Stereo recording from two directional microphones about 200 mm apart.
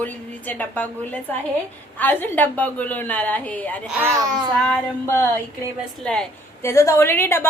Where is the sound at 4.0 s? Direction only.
15° right (ahead or behind).